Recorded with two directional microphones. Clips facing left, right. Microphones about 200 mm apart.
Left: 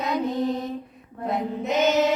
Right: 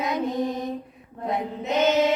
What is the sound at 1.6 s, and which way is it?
Music, 10° left (ahead or behind).